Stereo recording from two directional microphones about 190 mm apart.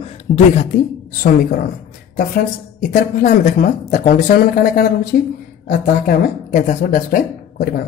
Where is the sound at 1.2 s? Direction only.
50° left (ahead or behind).